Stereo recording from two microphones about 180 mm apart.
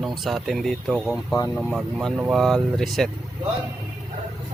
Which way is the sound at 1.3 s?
20° left (ahead or behind).